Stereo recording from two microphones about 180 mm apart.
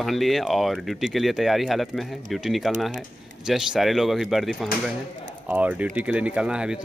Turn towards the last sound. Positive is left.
turn(degrees=-5)  # may be behind; listen again after turning